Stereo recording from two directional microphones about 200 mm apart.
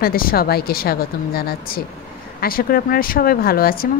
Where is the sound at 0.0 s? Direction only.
45° left (ahead or behind).